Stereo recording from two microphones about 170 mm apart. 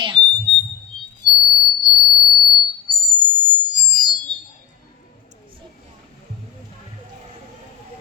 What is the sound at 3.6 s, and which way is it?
Music, 25° right (ahead or behind).